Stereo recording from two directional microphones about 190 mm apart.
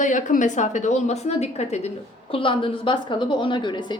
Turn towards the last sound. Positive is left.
turn(degrees=25)  # may be behind; listen again after turning